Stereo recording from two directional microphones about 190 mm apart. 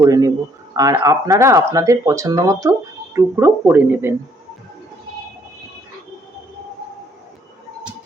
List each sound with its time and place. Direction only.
0.0 s speech: 15° right (ahead or behind)